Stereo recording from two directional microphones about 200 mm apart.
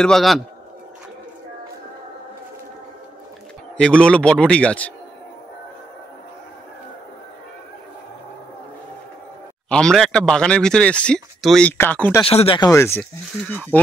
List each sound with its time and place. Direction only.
0.0 s speech: centre (ahead or behind)
3.7 s speech: 5° left (ahead or behind)
9.7 s speech: 5° left (ahead or behind)
12.3 s speech: 30° left (ahead or behind); by 13.7 s 10° left (ahead or behind)